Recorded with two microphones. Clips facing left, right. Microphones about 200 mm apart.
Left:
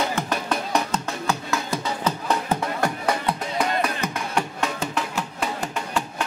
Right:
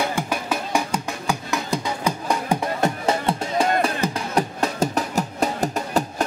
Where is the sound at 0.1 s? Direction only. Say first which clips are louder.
Even; 10° right (ahead or behind).